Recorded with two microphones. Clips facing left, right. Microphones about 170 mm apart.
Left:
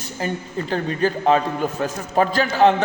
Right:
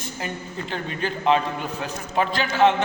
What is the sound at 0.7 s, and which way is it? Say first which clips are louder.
A man's voice: left 7 dB; 40° left (ahead or behind).